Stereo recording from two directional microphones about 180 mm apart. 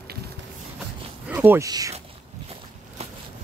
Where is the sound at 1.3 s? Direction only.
10° right (ahead or behind).